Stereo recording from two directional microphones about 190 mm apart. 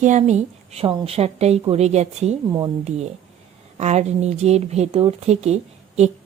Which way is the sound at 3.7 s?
35° right (ahead or behind).